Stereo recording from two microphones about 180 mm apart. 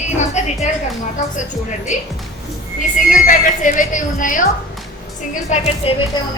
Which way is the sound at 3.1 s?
45° left (ahead or behind).